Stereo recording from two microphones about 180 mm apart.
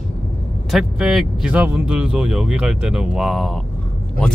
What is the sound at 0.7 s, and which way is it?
Speech, centre (ahead or behind).